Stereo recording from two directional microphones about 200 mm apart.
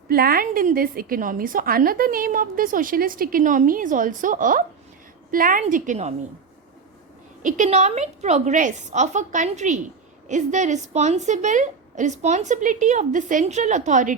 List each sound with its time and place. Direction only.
0.1 s a woman's voice: 50° right (ahead or behind)
7.4 s a woman's voice: 40° right (ahead or behind)